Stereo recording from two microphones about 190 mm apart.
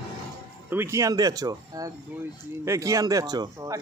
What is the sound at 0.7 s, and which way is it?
Speech, 15° right (ahead or behind).